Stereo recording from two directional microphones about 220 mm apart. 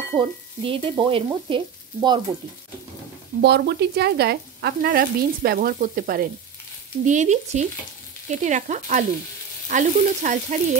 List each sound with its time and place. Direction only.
0.1 s sizzle: 25° right (ahead or behind)
3.3 s speech: 50° right (ahead or behind)
7.1 s frying: 30° right (ahead or behind)